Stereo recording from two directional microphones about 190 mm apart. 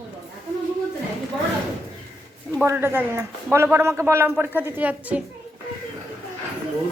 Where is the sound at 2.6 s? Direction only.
10° right (ahead or behind).